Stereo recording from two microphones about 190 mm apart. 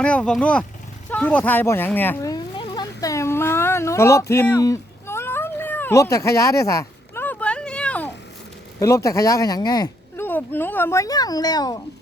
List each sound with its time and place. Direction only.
0.0 s speech: 5° left (ahead or behind)
1.1 s a sound: 10° left (ahead or behind)
8.8 s speech: 15° left (ahead or behind)